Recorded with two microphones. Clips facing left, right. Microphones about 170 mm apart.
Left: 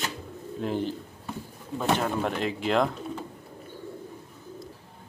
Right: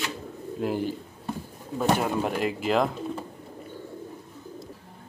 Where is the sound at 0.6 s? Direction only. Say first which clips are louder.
Right 1 dB; 5° right (ahead or behind).